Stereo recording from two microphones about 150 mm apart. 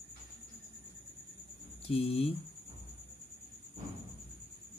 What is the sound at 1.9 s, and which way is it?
Speech, 40° left (ahead or behind).